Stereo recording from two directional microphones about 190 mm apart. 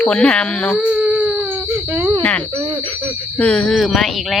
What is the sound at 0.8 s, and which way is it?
Baby cry, 5° right (ahead or behind).